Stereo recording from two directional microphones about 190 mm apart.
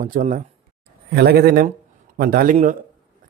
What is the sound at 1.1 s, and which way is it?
Speech, 55° right (ahead or behind).